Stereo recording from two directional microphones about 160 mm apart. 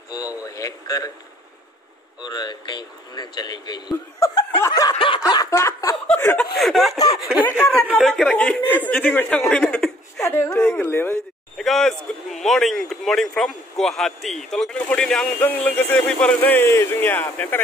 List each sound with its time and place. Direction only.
0.5 s a man's voice: 20° left (ahead or behind)
2.2 s a man's voice: 25° left (ahead or behind)
4.9 s snicker: 35° left (ahead or behind)
5.2 s a sound: 20° left (ahead or behind)
6.1 s chuckle: 10° left (ahead or behind)
6.5 s a sound: centre (ahead or behind)
7.4 s snicker: 10° left (ahead or behind)
7.9 s speech: centre (ahead or behind)
10.1 s a sound: 15° left (ahead or behind)
10.5 s speech: 5° left (ahead or behind)
11.5 s a sound: centre (ahead or behind)
12.1 s speech: centre (ahead or behind)